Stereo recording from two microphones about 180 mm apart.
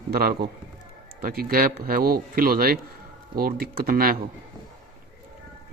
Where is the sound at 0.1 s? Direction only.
60° right (ahead or behind).